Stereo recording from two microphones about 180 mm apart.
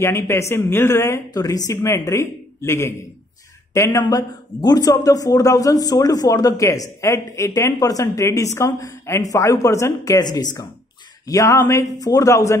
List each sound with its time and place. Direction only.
0.0 s a man's voice: 15° left (ahead or behind)